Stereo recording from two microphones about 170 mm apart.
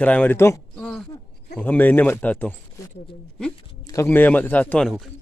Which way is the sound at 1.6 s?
10° left (ahead or behind).